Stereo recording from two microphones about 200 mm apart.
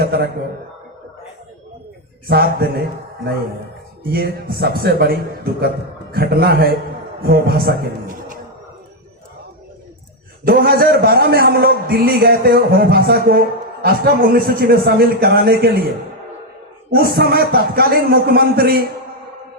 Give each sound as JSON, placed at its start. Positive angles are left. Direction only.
{"t": 0.0, "sound": "a man's voice", "side_deg": -50}
{"t": 2.2, "sound": "a man's voice", "side_deg": -50}
{"t": 4.0, "sound": "a man's voice", "side_deg": -50}
{"t": 10.4, "sound": "a man's voice", "side_deg": -50}
{"t": 16.9, "sound": "a man's voice", "side_deg": -50}